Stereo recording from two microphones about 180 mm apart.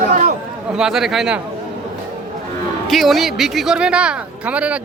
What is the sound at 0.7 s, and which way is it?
Speech, 5° right (ahead or behind).